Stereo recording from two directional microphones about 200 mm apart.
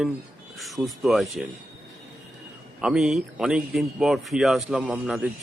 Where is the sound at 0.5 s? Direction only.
Centre (ahead or behind).